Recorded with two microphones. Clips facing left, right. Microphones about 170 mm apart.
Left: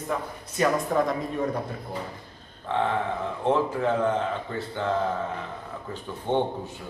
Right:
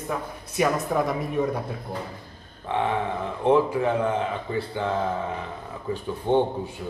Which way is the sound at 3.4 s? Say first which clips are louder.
Right 4 dB; 15° right (ahead or behind).